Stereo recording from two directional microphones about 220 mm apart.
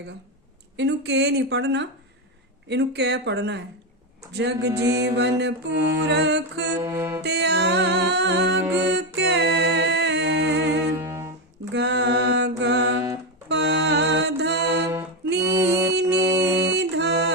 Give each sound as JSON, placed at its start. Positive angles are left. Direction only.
{"t": 0.8, "sound": "music", "side_deg": -55}
{"t": 4.8, "sound": "music", "side_deg": -15}
{"t": 5.0, "sound": "music", "side_deg": -50}
{"t": 6.8, "sound": "music", "side_deg": -10}
{"t": 7.2, "sound": "music", "side_deg": -50}
{"t": 10.9, "sound": "music", "side_deg": -10}
{"t": 11.7, "sound": "mantra", "side_deg": -50}
{"t": 13.5, "sound": "music", "side_deg": -50}
{"t": 15.4, "sound": "music", "side_deg": -15}
{"t": 16.4, "sound": "music", "side_deg": -50}